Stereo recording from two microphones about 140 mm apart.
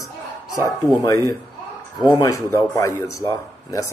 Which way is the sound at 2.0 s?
25° left (ahead or behind).